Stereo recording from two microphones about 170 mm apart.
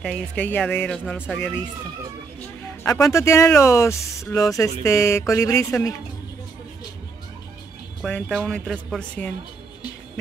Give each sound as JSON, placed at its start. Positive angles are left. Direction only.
{"t": 0.0, "sound": "speech", "side_deg": 10}
{"t": 2.8, "sound": "speech", "side_deg": 20}
{"t": 8.0, "sound": "speech", "side_deg": 0}